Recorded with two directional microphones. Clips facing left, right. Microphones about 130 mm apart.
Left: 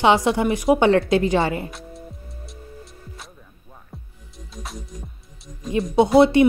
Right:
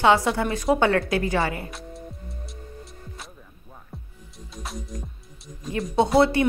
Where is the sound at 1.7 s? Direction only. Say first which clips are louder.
Even; centre (ahead or behind).